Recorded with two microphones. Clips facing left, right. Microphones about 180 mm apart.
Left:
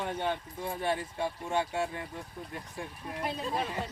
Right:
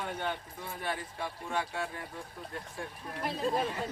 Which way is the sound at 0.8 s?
25° left (ahead or behind).